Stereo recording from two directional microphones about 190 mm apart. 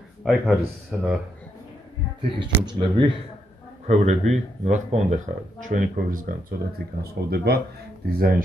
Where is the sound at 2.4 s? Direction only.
25° right (ahead or behind).